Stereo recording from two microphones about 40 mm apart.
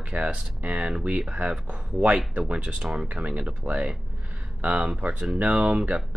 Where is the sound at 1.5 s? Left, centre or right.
Right.